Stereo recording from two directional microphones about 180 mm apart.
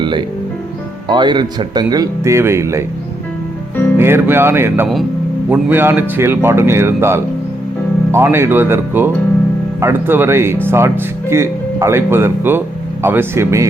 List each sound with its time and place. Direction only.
0.0 s speech: 25° right (ahead or behind)
3.9 s speech: 15° right (ahead or behind)